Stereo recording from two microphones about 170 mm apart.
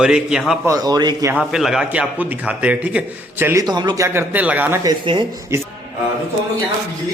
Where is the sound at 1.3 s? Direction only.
5° right (ahead or behind).